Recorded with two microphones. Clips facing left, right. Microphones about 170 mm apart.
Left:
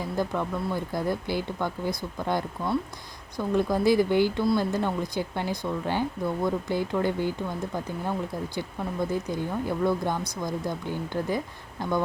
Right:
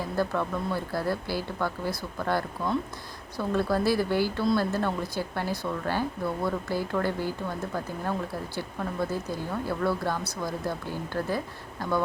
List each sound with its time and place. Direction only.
0.2 s a woman's voice: 15° left (ahead or behind)